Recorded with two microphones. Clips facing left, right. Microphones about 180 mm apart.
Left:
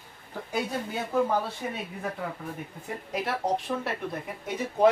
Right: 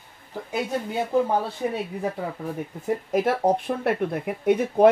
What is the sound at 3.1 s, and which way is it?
Speech, 50° right (ahead or behind).